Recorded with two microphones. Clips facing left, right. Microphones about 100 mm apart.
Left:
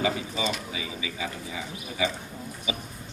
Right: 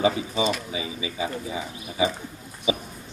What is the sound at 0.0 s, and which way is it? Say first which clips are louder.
Speech: right 5 dB; 25° right (ahead or behind).